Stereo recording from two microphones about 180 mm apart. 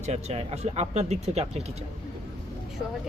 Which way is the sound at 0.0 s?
35° right (ahead or behind).